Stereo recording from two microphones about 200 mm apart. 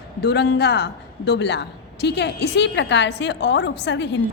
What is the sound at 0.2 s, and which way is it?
A woman's voice, 55° left (ahead or behind).